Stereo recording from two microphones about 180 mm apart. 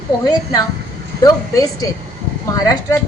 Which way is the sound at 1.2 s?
20° left (ahead or behind).